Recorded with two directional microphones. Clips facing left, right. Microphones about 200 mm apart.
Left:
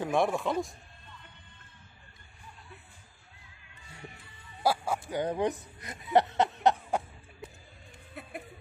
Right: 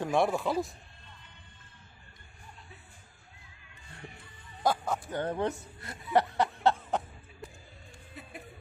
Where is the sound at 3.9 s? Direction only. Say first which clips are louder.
Even; 10° left (ahead or behind).